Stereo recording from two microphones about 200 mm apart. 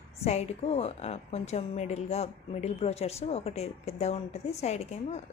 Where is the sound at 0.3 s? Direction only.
30° left (ahead or behind).